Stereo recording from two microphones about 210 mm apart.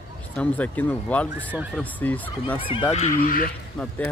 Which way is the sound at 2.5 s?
25° left (ahead or behind).